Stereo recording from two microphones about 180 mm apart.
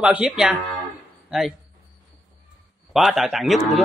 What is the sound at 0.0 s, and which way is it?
Speech, 5° right (ahead or behind).